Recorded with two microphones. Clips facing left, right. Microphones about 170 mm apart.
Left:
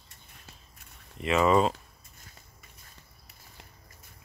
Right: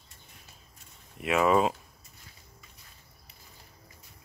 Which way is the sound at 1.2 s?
5° right (ahead or behind).